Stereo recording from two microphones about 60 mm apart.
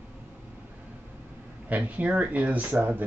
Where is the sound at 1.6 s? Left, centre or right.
Right.